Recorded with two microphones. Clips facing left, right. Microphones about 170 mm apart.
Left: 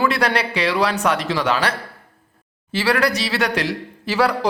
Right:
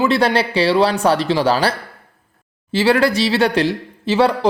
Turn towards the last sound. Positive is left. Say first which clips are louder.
# right 4 dB
turn(degrees=-25)  # may be behind; listen again after turning